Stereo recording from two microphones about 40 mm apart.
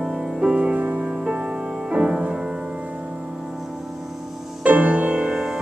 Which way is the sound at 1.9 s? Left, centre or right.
Right.